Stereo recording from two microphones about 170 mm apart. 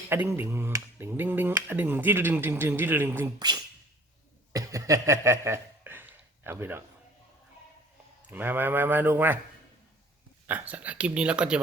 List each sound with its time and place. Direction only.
0.1 s speech: 15° right (ahead or behind)
3.3 s speech: 25° right (ahead or behind)
4.5 s a sound: 20° right (ahead or behind)
8.3 s speech: 10° right (ahead or behind)
10.4 s speech: 10° right (ahead or behind)